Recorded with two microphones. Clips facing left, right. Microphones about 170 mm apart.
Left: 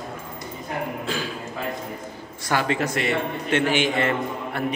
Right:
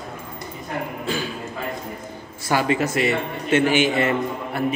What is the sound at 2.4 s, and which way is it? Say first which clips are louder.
A man's voice: right 3 dB; 10° right (ahead or behind).